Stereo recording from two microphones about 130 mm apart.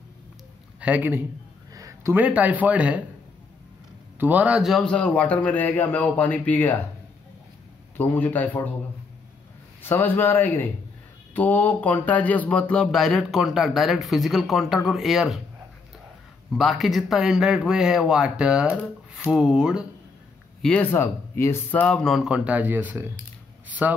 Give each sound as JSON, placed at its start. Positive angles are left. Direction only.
{"t": 0.7, "sound": "a man's voice", "side_deg": -10}
{"t": 1.7, "sound": "a sound", "side_deg": -25}
{"t": 2.1, "sound": "speech", "side_deg": -10}
{"t": 4.2, "sound": "speech", "side_deg": -10}
{"t": 4.8, "sound": "speech", "side_deg": 10}
{"t": 8.0, "sound": "speech", "side_deg": 15}
{"t": 9.8, "sound": "speech", "side_deg": 15}
{"t": 16.5, "sound": "speech", "side_deg": 0}
{"t": 20.6, "sound": "speech", "side_deg": 10}